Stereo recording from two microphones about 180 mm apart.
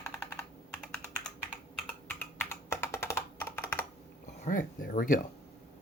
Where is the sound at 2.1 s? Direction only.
10° left (ahead or behind).